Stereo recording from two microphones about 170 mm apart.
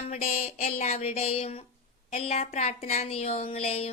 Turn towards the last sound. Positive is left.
turn(degrees=35)  # may be behind; listen again after turning